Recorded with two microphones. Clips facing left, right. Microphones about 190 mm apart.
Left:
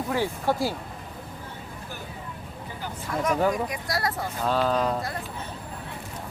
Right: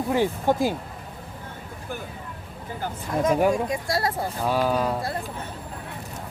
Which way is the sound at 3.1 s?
15° right (ahead or behind).